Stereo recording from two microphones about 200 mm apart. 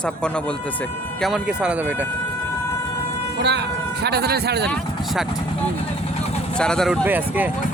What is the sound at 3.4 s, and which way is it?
Speech, 60° right (ahead or behind).